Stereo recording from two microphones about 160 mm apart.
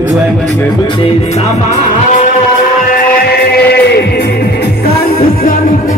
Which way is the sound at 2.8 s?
75° left (ahead or behind).